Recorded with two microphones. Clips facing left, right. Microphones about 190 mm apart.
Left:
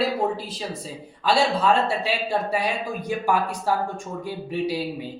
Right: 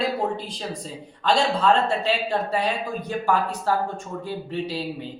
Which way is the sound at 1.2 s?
10° left (ahead or behind).